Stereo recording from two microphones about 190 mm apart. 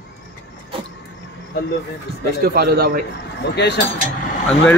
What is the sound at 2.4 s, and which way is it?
Speech, 55° right (ahead or behind).